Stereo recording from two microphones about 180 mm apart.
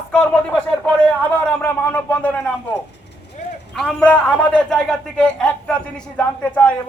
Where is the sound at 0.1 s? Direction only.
10° left (ahead or behind).